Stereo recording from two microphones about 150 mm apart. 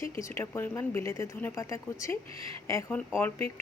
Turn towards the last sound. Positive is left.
turn(degrees=15)  # may be behind; listen again after turning